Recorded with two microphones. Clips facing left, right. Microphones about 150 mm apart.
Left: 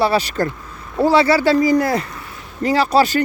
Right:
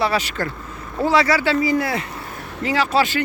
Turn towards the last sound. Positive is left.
turn(degrees=40)  # may be behind; listen again after turning